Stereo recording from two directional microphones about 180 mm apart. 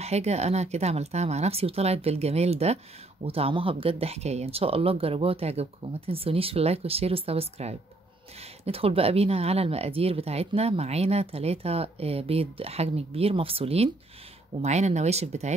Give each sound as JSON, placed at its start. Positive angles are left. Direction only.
{"t": 0.0, "sound": "speech", "side_deg": -35}